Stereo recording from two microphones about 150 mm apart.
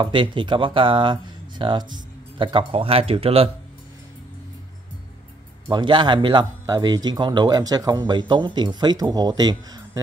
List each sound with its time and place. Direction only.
0.0 s speech: 35° right (ahead or behind)
5.7 s speech: 30° right (ahead or behind)